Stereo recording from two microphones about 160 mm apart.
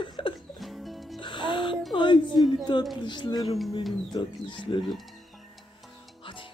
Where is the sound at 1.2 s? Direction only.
30° left (ahead or behind).